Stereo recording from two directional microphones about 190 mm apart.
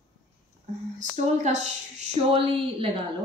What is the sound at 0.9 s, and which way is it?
A woman's voice, 40° right (ahead or behind).